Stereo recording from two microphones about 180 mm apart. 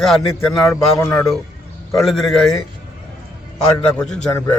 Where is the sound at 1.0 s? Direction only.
15° left (ahead or behind).